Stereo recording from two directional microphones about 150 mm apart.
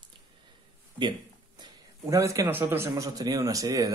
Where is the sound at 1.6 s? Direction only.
20° right (ahead or behind).